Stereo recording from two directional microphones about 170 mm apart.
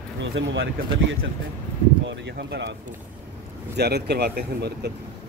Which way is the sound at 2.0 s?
90° right.